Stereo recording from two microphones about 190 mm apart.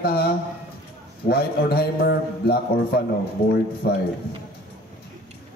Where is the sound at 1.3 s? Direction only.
55° left (ahead or behind).